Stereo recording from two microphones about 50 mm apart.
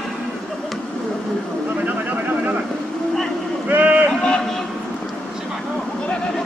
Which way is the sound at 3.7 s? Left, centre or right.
Right.